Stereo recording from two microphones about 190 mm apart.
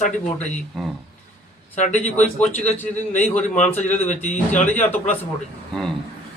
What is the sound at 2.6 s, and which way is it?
Speech, 35° left (ahead or behind).